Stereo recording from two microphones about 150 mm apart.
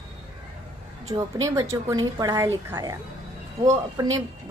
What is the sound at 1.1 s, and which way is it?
A woman's voice, 20° right (ahead or behind).